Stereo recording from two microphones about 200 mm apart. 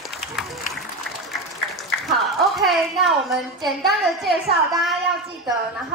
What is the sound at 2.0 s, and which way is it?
A woman's voice, centre (ahead or behind).